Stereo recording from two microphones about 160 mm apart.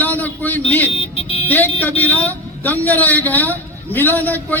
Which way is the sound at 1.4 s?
10° left (ahead or behind).